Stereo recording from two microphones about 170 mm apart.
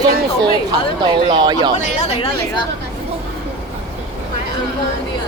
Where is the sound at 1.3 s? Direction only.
25° right (ahead or behind).